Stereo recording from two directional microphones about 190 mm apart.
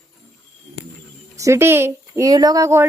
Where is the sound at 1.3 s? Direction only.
15° right (ahead or behind).